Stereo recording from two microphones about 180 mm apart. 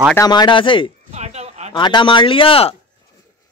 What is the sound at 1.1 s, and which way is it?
Speech, 40° right (ahead or behind).